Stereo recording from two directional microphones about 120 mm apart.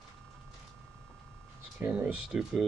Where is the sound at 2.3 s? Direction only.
5° right (ahead or behind).